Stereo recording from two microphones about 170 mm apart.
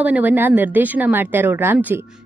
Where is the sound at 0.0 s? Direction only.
10° right (ahead or behind).